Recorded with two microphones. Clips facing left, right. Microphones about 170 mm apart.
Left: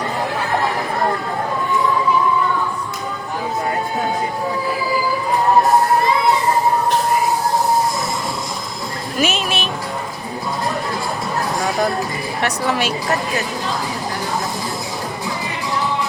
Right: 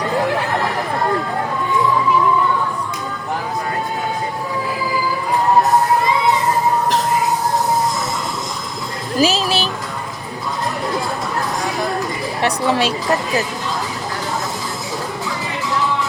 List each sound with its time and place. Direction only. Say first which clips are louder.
9.1 s music: right 4 dB; 35° right (ahead or behind)
12.4 s a woman's voice: right 3 dB; 30° right (ahead or behind)